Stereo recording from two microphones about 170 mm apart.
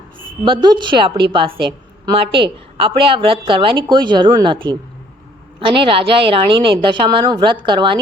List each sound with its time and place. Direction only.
0.4 s a woman's voice: 25° right (ahead or behind)